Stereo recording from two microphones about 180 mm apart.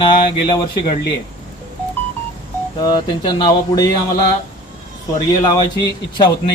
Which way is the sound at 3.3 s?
20° left (ahead or behind).